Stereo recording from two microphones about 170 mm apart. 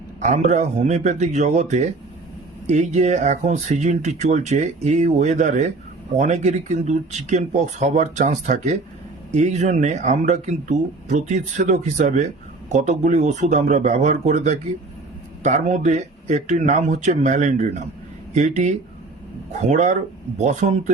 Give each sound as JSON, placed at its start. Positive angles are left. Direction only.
{"t": 0.2, "sound": "speech", "side_deg": -40}